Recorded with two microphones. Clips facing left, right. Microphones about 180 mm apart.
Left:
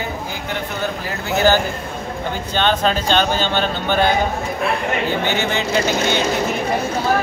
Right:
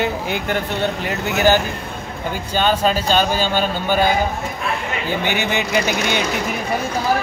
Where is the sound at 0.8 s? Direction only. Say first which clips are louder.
Right 3 dB; 20° right (ahead or behind).